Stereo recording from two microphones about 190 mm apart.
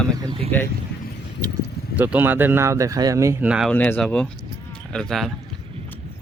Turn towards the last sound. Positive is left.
turn(degrees=0)  # may be behind; listen again after turning